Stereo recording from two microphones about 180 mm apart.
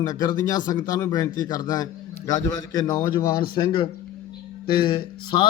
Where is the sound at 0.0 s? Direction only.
20° left (ahead or behind).